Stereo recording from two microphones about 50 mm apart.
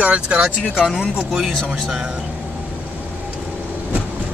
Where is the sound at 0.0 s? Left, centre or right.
Right.